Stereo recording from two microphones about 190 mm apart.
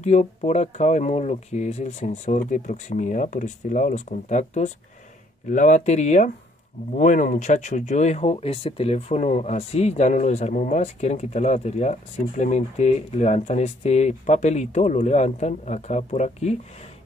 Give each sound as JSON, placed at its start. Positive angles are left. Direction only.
{"t": 0.0, "sound": "speech", "side_deg": 35}